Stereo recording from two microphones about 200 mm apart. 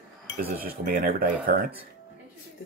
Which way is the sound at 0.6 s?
45° right (ahead or behind).